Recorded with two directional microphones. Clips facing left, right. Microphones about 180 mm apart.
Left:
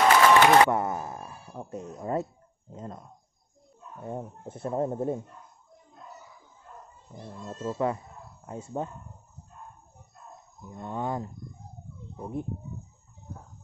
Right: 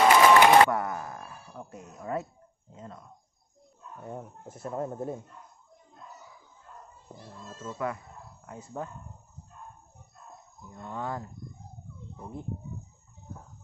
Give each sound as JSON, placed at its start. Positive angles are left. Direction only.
{"t": 0.0, "sound": "a sound", "side_deg": -10}
{"t": 0.7, "sound": "a sound", "side_deg": 25}
{"t": 2.7, "sound": "speech", "side_deg": 35}
{"t": 4.0, "sound": "speech", "side_deg": 25}
{"t": 7.2, "sound": "speech", "side_deg": 25}
{"t": 10.7, "sound": "speech", "side_deg": 20}